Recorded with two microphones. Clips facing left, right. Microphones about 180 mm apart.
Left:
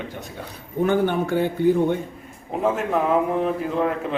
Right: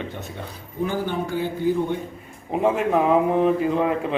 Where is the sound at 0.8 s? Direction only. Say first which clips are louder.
Left 5 dB; 60° left (ahead or behind).